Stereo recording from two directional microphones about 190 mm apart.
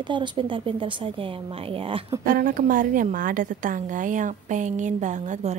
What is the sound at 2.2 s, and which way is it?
A woman's voice, 45° right (ahead or behind).